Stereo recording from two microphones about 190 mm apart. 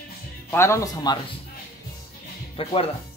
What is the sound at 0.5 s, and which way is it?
Speech, 15° left (ahead or behind).